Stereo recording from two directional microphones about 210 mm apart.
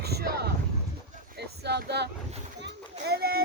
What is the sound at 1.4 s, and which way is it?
Speech, 50° right (ahead or behind).